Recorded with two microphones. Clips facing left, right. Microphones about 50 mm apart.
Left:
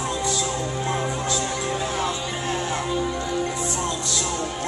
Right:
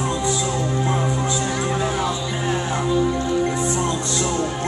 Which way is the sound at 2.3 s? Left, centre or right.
Centre.